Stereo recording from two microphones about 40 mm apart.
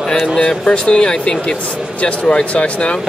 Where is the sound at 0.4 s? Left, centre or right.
Left.